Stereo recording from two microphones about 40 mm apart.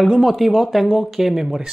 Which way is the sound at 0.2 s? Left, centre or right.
Centre.